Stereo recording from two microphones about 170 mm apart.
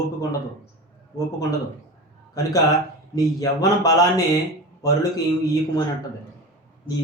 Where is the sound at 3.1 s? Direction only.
20° left (ahead or behind).